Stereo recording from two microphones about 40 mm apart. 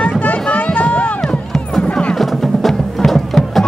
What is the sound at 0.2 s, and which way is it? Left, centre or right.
Music, left.